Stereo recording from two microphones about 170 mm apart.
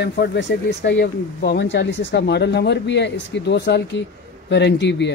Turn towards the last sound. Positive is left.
turn(degrees=90)